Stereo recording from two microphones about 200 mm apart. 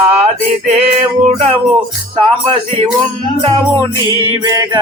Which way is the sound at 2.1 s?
30° right (ahead or behind).